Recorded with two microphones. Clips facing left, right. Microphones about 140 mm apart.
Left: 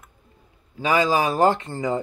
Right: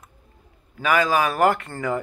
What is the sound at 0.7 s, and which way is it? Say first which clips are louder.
A man's voice: even; 25° left (ahead or behind).